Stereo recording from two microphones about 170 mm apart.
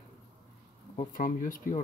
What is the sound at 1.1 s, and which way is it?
Speech, 50° left (ahead or behind).